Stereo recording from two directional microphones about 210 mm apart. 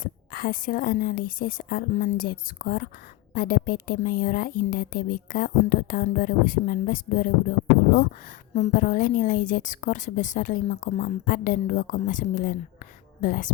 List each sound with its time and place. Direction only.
0.0 s a woman's voice: 45° left (ahead or behind)
8.5 s a woman's voice: 35° left (ahead or behind)